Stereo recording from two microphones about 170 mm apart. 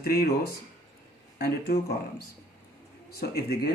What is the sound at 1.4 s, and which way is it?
Speech, 70° left (ahead or behind).